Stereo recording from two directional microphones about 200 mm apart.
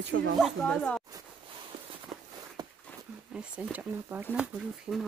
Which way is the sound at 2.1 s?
35° right (ahead or behind).